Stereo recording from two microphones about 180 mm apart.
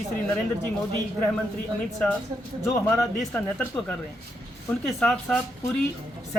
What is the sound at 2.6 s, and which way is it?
Speech, 15° left (ahead or behind).